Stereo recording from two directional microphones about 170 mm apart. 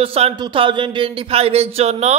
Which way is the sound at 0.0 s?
35° right (ahead or behind).